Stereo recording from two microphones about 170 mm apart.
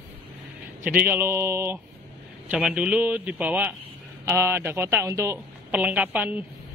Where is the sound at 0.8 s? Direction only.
10° right (ahead or behind).